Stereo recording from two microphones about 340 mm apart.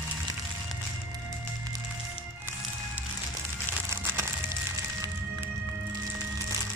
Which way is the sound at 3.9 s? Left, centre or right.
Centre.